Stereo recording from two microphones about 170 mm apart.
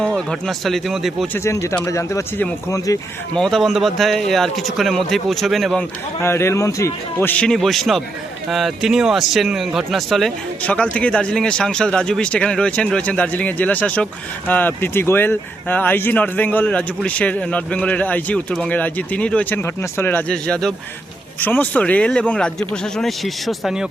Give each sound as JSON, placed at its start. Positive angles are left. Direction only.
{"t": 0.0, "sound": "speech", "side_deg": 0}
{"t": 1.3, "sound": "speech", "side_deg": 15}
{"t": 3.3, "sound": "speech", "side_deg": 0}
{"t": 6.1, "sound": "speech", "side_deg": 15}